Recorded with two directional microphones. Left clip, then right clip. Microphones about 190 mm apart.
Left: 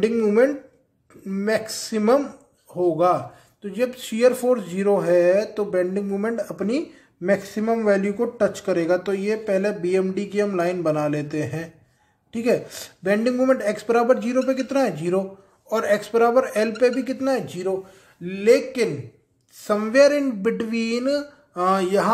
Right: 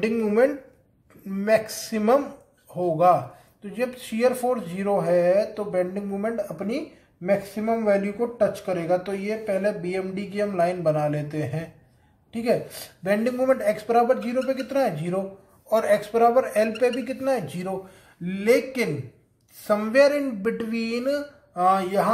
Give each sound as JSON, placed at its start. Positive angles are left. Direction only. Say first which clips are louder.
{"t": 0.0, "sound": "speech", "louder": "left 3 dB", "side_deg": 20}